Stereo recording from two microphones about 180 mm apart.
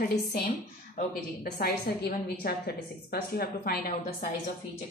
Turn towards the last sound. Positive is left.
turn(degrees=55)  # may be behind; listen again after turning